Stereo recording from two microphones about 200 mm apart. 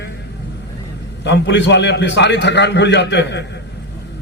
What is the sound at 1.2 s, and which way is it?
A man's voice, 60° left (ahead or behind).